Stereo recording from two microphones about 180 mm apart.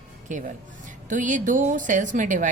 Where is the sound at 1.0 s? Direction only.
45° right (ahead or behind).